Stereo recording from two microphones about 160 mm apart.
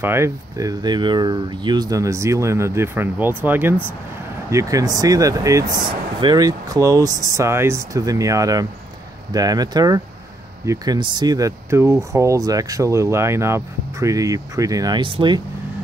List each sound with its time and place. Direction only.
0.0 s speech: 15° right (ahead or behind); by 15.4 s 30° right (ahead or behind)